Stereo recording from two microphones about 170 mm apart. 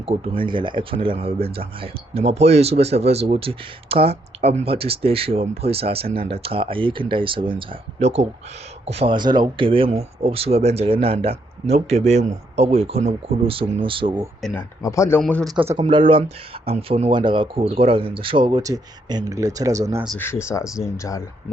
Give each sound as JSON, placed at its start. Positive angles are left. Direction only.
{"t": 0.0, "sound": "speech", "side_deg": -30}
{"t": 14.5, "sound": "speech", "side_deg": 20}
{"t": 15.2, "sound": "speech", "side_deg": 5}
{"t": 15.5, "sound": "speech", "side_deg": -15}
{"t": 15.8, "sound": "speech", "side_deg": -30}
{"t": 20.1, "sound": "speech", "side_deg": 15}